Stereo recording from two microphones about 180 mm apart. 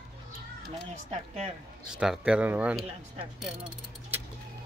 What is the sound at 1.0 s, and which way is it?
Speech, 35° right (ahead or behind).